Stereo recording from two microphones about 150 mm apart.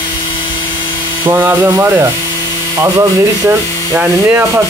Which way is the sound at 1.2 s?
15° right (ahead or behind).